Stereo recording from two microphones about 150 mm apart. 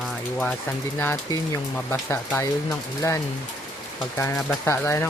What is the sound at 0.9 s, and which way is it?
Speech, 15° left (ahead or behind).